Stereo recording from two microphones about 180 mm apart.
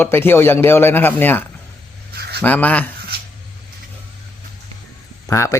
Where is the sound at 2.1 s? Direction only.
60° right (ahead or behind).